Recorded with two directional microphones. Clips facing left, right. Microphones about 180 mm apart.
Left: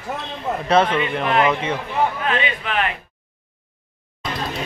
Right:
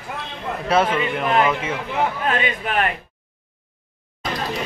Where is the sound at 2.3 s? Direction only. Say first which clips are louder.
Even; 45° right (ahead or behind).